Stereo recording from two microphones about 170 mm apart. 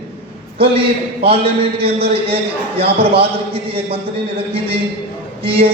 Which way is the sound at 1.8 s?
35° right (ahead or behind).